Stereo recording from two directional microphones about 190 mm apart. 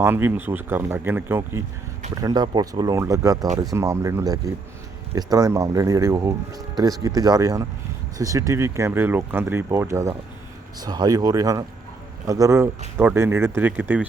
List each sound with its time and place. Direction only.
0.0 s speech: 10° right (ahead or behind)